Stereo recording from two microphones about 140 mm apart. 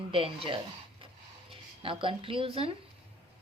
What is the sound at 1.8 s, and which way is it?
Speech, 40° right (ahead or behind).